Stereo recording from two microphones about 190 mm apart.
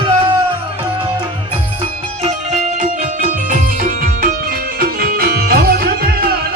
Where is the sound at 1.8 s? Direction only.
35° right (ahead or behind).